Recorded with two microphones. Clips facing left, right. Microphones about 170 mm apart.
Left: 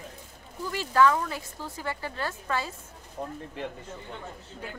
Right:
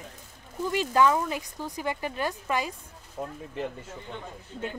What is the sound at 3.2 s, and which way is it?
Speech, centre (ahead or behind).